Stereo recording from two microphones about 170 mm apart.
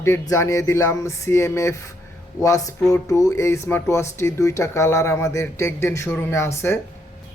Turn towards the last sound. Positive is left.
turn(degrees=15)  # may be behind; listen again after turning